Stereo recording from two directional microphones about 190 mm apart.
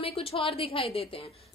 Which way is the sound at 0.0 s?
30° left (ahead or behind).